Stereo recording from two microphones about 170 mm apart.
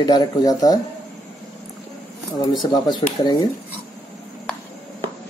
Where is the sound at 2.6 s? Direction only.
25° left (ahead or behind).